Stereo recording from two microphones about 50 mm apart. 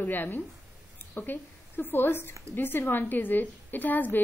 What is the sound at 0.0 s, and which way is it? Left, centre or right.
A woman's voice, left.